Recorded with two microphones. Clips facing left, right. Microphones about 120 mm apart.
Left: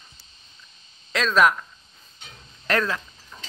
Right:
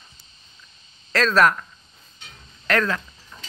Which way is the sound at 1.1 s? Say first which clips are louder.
Right 1 dB; 10° left (ahead or behind).